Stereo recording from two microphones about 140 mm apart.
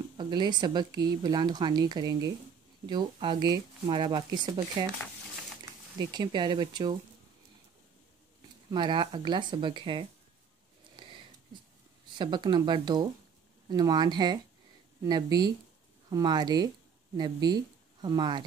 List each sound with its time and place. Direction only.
0.2 s a woman's voice: 30° right (ahead or behind)
5.9 s a woman's voice: 35° right (ahead or behind)
8.6 s a woman's voice: 35° right (ahead or behind)
12.2 s a woman's voice: 35° right (ahead or behind)